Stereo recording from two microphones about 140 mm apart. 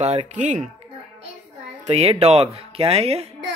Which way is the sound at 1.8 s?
45° right (ahead or behind).